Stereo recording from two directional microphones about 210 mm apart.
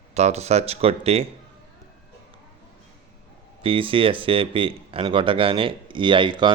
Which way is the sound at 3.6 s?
25° right (ahead or behind).